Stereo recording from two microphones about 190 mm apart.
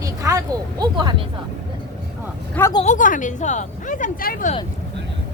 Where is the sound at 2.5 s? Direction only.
15° left (ahead or behind).